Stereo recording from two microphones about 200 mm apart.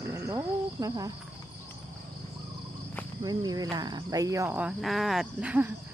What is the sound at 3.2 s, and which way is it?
Cricket, 20° right (ahead or behind).